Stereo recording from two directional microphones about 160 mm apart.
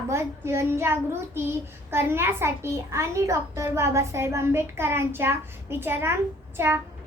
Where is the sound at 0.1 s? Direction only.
15° right (ahead or behind).